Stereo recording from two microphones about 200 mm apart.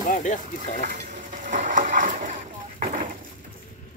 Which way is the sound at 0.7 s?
40° right (ahead or behind).